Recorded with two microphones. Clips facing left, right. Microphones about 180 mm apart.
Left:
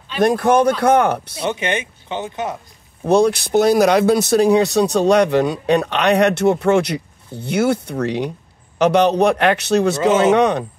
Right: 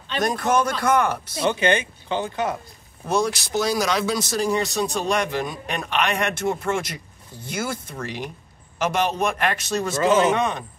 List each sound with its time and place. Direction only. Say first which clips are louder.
0.2 s speech: left 8 dB; 60° left (ahead or behind)
1.4 s speech: right 3 dB; 20° left (ahead or behind)
3.1 s speech: left 9 dB; 60° left (ahead or behind)